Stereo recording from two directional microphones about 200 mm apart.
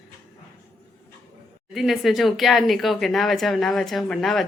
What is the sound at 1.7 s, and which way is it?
Speech, centre (ahead or behind).